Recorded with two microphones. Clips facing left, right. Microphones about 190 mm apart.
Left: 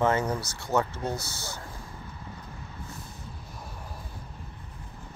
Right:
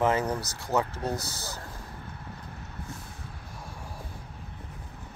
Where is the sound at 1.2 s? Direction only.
35° right (ahead or behind).